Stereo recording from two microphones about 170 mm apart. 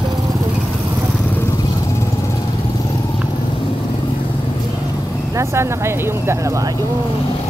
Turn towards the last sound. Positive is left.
turn(degrees=-20)  # may be behind; listen again after turning